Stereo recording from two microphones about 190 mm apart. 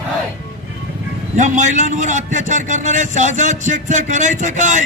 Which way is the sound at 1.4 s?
40° right (ahead or behind).